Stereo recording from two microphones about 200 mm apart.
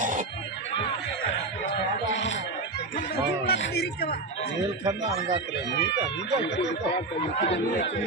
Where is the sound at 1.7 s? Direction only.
70° left (ahead or behind).